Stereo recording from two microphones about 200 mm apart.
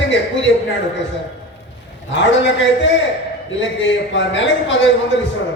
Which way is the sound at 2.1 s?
65° left (ahead or behind).